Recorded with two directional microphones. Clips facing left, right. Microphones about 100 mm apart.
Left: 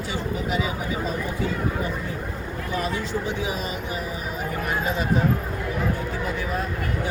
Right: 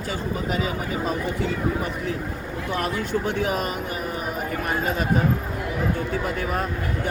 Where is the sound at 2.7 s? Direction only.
60° right (ahead or behind).